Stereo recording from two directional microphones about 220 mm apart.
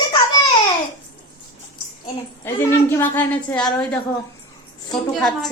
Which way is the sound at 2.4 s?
10° left (ahead or behind).